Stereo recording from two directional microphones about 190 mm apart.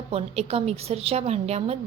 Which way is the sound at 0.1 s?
30° right (ahead or behind).